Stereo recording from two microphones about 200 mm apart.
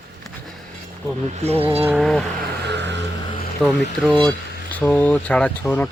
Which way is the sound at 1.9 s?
Centre (ahead or behind).